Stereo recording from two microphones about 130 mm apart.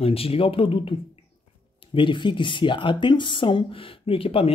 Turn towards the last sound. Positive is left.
turn(degrees=45)  # may be behind; listen again after turning